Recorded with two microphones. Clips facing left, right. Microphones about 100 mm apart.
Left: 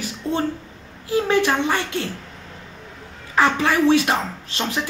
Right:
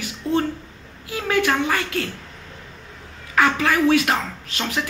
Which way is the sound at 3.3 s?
25° left (ahead or behind).